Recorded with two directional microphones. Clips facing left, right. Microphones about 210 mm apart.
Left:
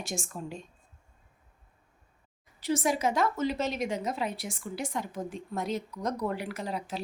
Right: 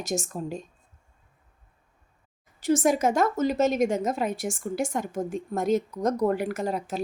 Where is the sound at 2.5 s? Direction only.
45° right (ahead or behind).